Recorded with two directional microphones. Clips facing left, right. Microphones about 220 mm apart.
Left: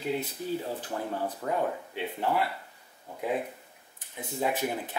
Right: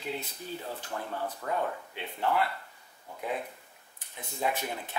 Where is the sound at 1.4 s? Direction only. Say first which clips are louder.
Left 2 dB; 20° left (ahead or behind).